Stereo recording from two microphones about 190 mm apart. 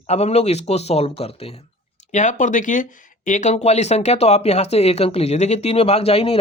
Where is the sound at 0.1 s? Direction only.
35° left (ahead or behind).